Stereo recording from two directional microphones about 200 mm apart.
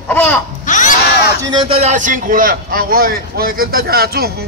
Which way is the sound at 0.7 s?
40° left (ahead or behind).